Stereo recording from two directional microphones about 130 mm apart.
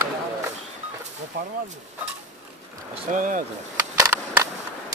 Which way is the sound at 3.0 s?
90° right.